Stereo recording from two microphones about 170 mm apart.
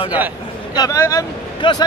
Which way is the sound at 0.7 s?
20° left (ahead or behind).